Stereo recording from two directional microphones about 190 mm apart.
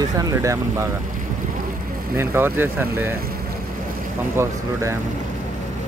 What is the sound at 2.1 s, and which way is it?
Speech, 10° right (ahead or behind).